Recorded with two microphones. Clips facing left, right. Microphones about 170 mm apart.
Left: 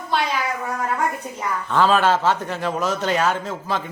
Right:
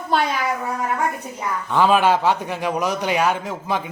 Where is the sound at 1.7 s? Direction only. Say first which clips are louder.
Right 1 dB; 15° right (ahead or behind).